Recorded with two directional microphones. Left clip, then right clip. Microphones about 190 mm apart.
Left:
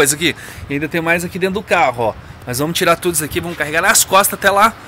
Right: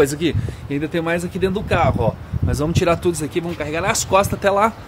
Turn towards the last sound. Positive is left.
turn(degrees=-15)  # may be behind; listen again after turning